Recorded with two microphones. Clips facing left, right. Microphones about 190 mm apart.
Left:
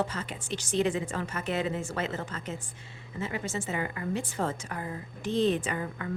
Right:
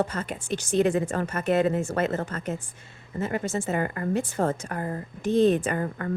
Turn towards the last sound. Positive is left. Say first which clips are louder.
# right 6 dB
turn(degrees=-50)  # may be behind; listen again after turning